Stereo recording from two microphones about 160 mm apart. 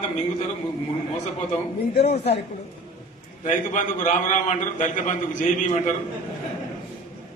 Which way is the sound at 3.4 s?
55° left (ahead or behind).